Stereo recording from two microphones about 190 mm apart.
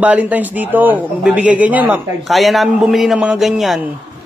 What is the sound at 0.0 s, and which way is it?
A man's voice, 10° right (ahead or behind).